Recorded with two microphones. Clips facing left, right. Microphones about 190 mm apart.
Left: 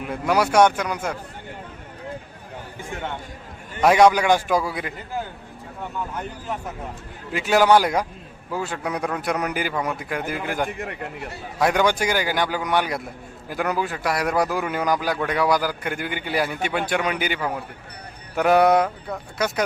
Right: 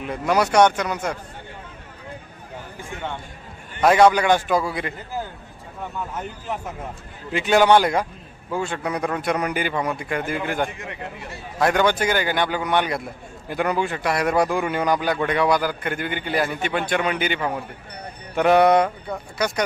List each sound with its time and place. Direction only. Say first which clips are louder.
0.0 s a man's voice: even; 10° left (ahead or behind)
3.8 s a man's voice: even; 10° left (ahead or behind)
7.3 s a man's voice: right 1 dB; 5° left (ahead or behind)
10.7 s speech: left 3 dB; 55° left (ahead or behind)
11.6 s a man's voice: right 1 dB; 10° left (ahead or behind)